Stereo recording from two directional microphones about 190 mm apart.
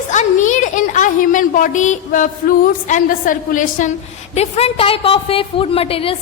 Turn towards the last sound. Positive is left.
turn(degrees=30)  # may be behind; listen again after turning